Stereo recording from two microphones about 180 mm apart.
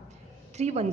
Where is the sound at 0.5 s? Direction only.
40° right (ahead or behind).